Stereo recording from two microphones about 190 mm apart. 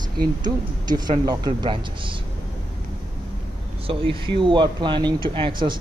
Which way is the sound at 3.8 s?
30° right (ahead or behind).